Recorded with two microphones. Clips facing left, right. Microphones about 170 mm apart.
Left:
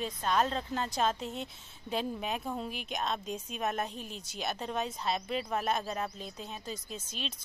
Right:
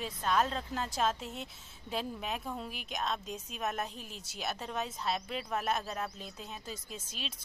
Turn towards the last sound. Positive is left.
turn(degrees=-5)  # may be behind; listen again after turning